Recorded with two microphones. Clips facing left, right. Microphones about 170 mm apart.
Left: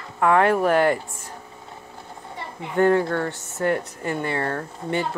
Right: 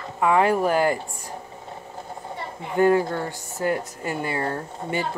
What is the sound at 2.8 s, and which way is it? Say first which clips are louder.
Speech: even; 10° right (ahead or behind).